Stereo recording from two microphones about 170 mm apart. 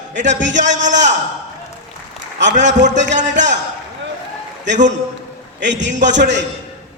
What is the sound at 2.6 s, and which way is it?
Speech, 90° right.